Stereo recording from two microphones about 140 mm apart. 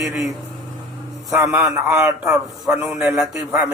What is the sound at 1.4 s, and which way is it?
A man's voice, 15° right (ahead or behind).